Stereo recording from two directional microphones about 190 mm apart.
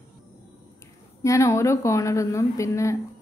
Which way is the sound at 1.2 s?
15° left (ahead or behind).